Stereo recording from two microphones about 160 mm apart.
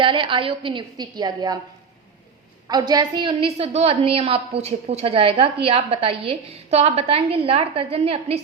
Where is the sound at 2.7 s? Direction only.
25° right (ahead or behind).